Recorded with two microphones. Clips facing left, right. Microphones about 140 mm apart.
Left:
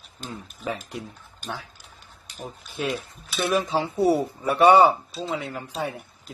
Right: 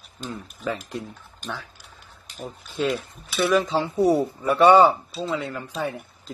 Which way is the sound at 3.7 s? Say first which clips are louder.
Right 1 dB; 10° left (ahead or behind).